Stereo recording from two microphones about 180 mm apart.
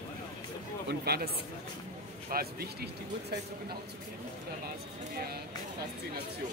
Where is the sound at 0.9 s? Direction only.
60° right (ahead or behind).